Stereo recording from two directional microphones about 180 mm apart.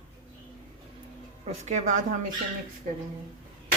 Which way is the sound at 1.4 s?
40° right (ahead or behind).